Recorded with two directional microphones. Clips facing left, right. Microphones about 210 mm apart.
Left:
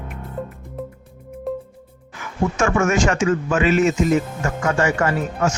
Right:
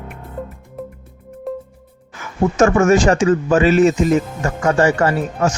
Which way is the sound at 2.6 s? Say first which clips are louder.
Right 6 dB; 40° right (ahead or behind).